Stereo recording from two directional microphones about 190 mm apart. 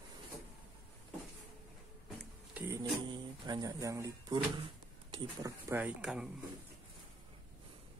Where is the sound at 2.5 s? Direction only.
15° right (ahead or behind).